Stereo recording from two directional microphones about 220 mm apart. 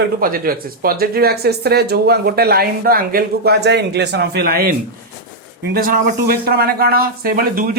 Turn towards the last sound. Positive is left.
turn(degrees=-40)  # may be behind; listen again after turning